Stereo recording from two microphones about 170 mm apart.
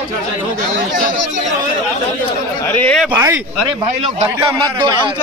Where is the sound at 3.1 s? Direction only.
15° right (ahead or behind).